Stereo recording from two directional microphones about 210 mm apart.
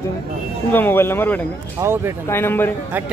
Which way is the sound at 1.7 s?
10° right (ahead or behind).